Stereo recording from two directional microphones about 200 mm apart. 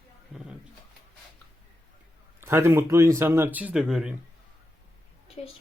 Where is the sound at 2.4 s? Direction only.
10° right (ahead or behind).